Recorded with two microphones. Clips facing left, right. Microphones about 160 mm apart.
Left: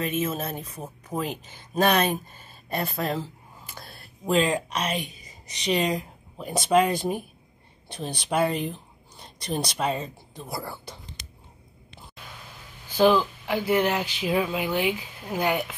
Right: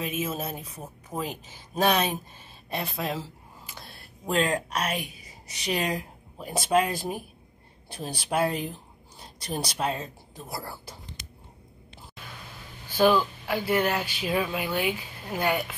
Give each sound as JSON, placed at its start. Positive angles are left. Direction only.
{"t": 0.0, "sound": "speech", "side_deg": -5}
{"t": 12.9, "sound": "speech", "side_deg": 15}